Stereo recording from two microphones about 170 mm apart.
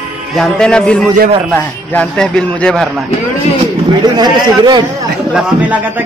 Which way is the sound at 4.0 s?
25° right (ahead or behind).